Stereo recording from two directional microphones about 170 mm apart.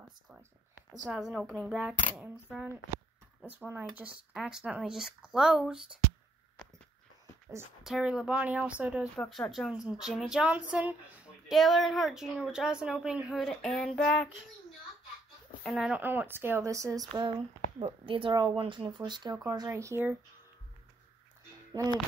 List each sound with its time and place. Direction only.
1.0 s a woman's voice: centre (ahead or behind)
7.8 s speech: 5° right (ahead or behind)
9.1 s a woman's voice: 5° left (ahead or behind)
15.6 s speech: centre (ahead or behind); by 17.1 s 20° right (ahead or behind)
17.1 s speech: 30° right (ahead or behind); by 20.2 s 15° right (ahead or behind)